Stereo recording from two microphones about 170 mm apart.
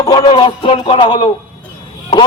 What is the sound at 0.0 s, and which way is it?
Speech, 25° left (ahead or behind).